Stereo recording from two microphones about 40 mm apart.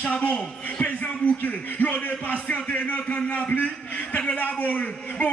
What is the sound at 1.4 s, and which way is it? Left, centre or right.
A man's voice, left.